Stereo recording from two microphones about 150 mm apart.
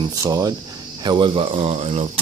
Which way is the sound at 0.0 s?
25° right (ahead or behind).